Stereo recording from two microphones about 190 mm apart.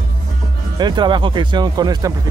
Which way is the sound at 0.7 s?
25° right (ahead or behind).